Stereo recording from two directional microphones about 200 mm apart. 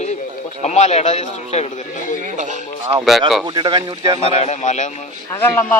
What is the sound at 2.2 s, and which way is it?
Speech, 35° right (ahead or behind).